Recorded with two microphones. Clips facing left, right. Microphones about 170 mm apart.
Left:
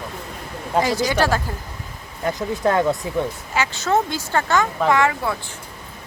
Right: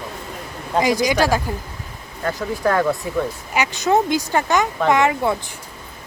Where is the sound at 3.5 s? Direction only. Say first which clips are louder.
Right 3 dB; 15° right (ahead or behind).